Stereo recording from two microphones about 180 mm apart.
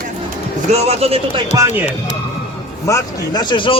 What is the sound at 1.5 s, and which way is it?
Speech, 15° right (ahead or behind).